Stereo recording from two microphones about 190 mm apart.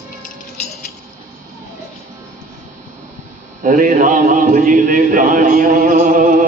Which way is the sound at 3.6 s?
45° right (ahead or behind).